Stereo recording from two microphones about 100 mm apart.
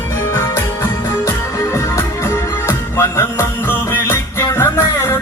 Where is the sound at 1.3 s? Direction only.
30° left (ahead or behind).